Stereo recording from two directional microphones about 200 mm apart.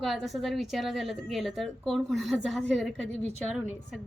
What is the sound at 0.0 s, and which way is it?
A woman's voice, centre (ahead or behind).